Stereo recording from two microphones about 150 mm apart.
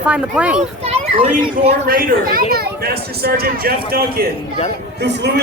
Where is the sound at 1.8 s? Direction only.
75° right (ahead or behind); by 4.2 s 90° right.